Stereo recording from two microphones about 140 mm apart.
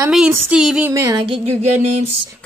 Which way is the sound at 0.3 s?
5° right (ahead or behind).